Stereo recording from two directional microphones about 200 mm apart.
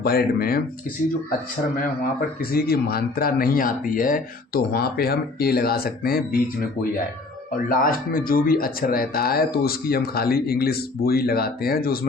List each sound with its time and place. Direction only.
0.0 s speech: 50° left (ahead or behind)
2.4 s speech: 50° left (ahead or behind)